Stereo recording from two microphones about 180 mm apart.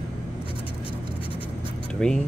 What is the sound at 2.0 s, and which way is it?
Speech, 5° left (ahead or behind).